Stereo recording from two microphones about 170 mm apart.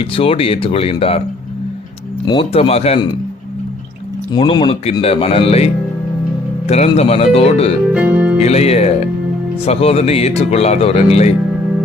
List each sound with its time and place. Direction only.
0.0 s speech: 35° left (ahead or behind)
2.2 s speech: 30° left (ahead or behind)
4.3 s speech: 25° left (ahead or behind)
7.9 s speech: 10° right (ahead or behind)
8.4 s speech: 35° left (ahead or behind)